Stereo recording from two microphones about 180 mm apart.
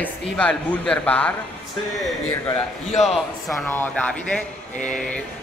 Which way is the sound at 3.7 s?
10° left (ahead or behind).